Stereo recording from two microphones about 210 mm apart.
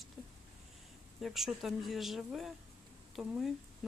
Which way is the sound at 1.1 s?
Centre (ahead or behind).